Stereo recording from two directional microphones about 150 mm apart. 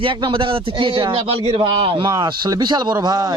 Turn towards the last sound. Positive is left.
turn(degrees=-25)  # may be behind; listen again after turning